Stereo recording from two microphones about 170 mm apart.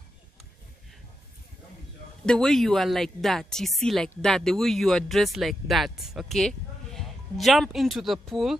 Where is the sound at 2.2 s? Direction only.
5° left (ahead or behind).